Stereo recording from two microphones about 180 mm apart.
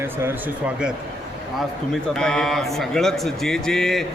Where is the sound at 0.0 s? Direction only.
15° right (ahead or behind).